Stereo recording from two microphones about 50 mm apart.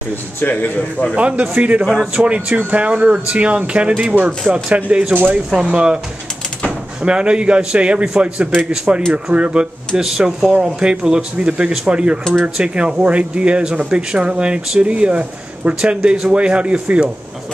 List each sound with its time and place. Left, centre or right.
0.4 s a man's voice: left
1.1 s speech: right
7.0 s speech: centre